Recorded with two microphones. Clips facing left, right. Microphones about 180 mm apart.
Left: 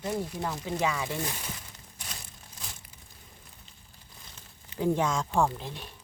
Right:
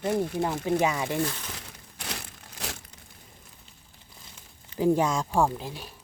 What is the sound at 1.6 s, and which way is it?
Crumpling, 75° right (ahead or behind).